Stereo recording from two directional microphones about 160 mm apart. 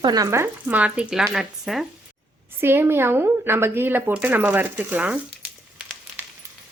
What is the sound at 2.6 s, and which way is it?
Speech, 15° right (ahead or behind).